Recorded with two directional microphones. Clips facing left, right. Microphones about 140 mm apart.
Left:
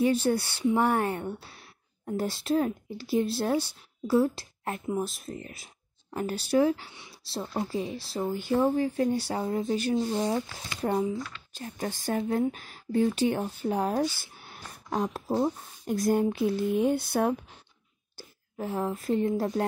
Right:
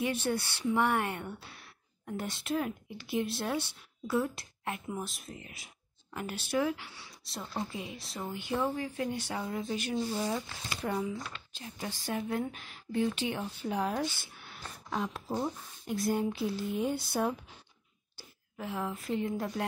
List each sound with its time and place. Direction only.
0.0 s a woman's voice: 30° left (ahead or behind)
11.5 s speech: 45° left (ahead or behind)
18.1 s speech: 40° left (ahead or behind)